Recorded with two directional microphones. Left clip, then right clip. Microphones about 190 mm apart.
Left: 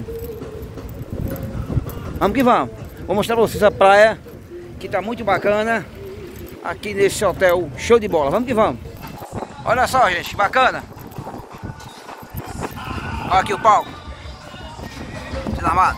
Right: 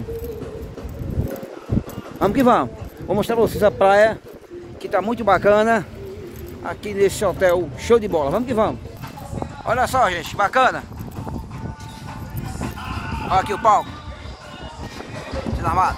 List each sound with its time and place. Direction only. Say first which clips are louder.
2.1 s speech: left 1 dB; 20° right (ahead or behind)
3.1 s speech: left 1 dB; 10° right (ahead or behind)
4.8 s speech: right 2 dB; 40° right (ahead or behind)
6.6 s speech: left 1 dB; 10° right (ahead or behind)
13.3 s speech: left 2 dB; 5° right (ahead or behind)
15.6 s speech: left 3 dB; 10° right (ahead or behind)